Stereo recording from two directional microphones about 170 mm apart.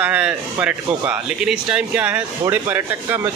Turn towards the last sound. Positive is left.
turn(degrees=-10)  # may be behind; listen again after turning